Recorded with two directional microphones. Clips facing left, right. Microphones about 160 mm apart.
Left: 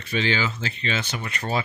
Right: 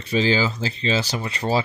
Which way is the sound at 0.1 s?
35° right (ahead or behind).